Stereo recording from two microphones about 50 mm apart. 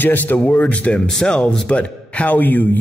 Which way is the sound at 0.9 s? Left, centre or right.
Centre.